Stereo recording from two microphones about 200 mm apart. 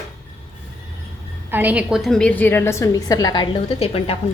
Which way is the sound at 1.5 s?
10° right (ahead or behind).